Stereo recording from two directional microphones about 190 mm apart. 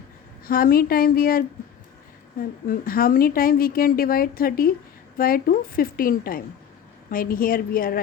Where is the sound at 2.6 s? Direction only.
50° left (ahead or behind).